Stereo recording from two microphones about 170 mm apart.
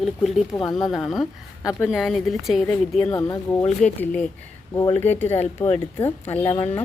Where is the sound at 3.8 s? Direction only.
5° left (ahead or behind).